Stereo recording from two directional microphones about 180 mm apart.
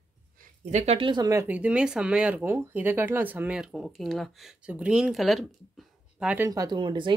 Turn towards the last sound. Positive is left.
turn(degrees=-25)  # may be behind; listen again after turning